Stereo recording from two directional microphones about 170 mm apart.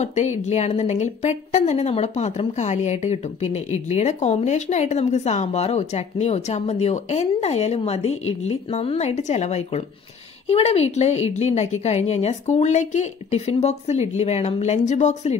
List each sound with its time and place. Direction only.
0.0 s a woman's voice: 40° left (ahead or behind)